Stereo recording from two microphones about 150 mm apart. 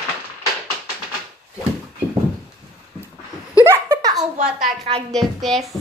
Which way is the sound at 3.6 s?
20° right (ahead or behind).